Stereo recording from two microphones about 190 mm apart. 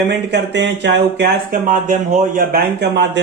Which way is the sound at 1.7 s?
40° right (ahead or behind).